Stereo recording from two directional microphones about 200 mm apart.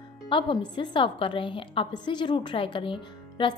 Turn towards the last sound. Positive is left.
turn(degrees=25)  # may be behind; listen again after turning